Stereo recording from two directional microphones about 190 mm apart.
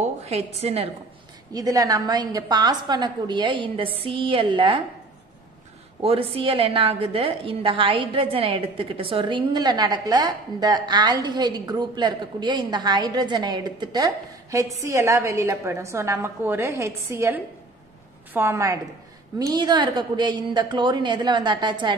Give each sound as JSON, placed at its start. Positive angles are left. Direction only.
{"t": 0.0, "sound": "a woman's voice", "side_deg": -35}
{"t": 1.5, "sound": "a woman's voice", "side_deg": -20}
{"t": 6.0, "sound": "a woman's voice", "side_deg": -30}